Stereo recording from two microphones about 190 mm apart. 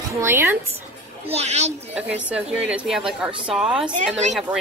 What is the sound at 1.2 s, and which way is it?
Speech, 35° right (ahead or behind).